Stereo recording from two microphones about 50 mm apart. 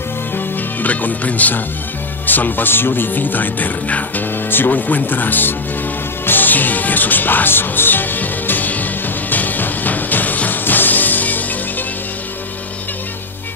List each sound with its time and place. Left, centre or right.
0.7 s speech: left
6.2 s music: left